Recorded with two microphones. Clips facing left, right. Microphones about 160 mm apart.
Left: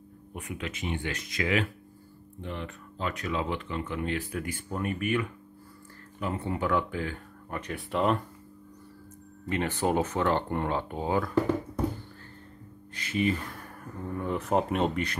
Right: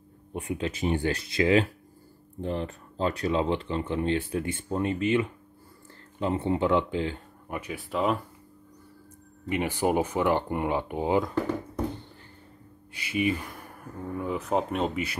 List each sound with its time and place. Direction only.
0.3 s speech: 30° right (ahead or behind)
7.5 s speech: 5° right (ahead or behind)
9.5 s speech: 10° right (ahead or behind)
12.9 s speech: 10° right (ahead or behind)